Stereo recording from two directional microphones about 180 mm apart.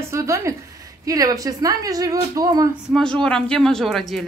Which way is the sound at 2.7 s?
Centre (ahead or behind).